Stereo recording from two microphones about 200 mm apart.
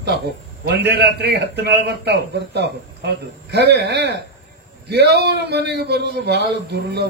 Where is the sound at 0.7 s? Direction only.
55° right (ahead or behind).